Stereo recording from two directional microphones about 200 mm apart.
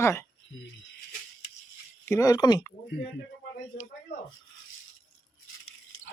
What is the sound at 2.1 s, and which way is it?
Speech, 15° left (ahead or behind).